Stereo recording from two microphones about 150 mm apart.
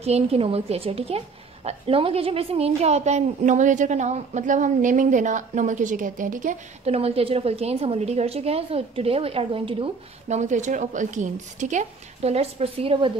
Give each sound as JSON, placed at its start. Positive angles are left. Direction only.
{"t": 0.0, "sound": "a woman's voice", "side_deg": -45}
{"t": 6.9, "sound": "a woman's voice", "side_deg": -40}
{"t": 10.2, "sound": "a woman's voice", "side_deg": -50}